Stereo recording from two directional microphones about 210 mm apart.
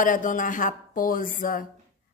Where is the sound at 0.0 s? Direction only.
40° left (ahead or behind).